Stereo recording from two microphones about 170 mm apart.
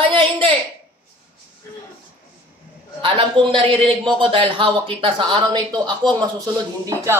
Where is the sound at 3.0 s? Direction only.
30° right (ahead or behind).